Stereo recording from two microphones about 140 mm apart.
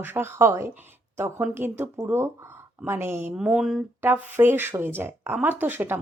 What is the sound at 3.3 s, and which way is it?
A woman's voice, 5° right (ahead or behind).